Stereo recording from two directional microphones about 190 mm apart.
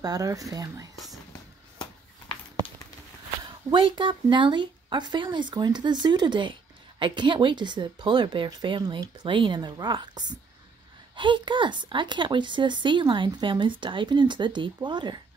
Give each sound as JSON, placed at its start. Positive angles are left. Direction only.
{"t": 0.0, "sound": "speech", "side_deg": -20}
{"t": 0.9, "sound": "whispering", "side_deg": 0}
{"t": 3.7, "sound": "speech", "side_deg": -25}